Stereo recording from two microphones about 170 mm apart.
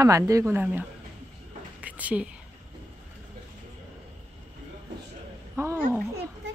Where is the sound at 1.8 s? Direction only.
10° right (ahead or behind).